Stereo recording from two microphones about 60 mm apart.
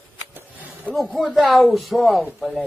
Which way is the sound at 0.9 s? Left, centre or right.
Centre.